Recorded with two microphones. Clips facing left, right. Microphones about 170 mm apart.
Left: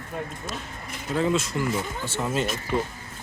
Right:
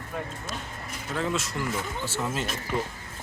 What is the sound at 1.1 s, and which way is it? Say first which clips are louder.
Speech: left 5 dB; 10° left (ahead or behind).